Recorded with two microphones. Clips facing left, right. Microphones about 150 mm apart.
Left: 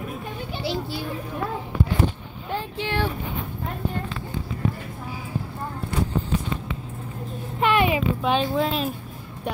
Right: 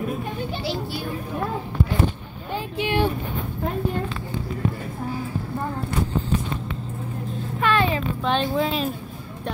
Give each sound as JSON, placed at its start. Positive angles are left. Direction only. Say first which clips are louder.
{"t": 2.5, "sound": "a sound", "louder": "right 3 dB", "side_deg": -15}
{"t": 7.6, "sound": "vehicle", "louder": "left 1 dB", "side_deg": 15}
{"t": 8.2, "sound": "speech", "louder": "even", "side_deg": 5}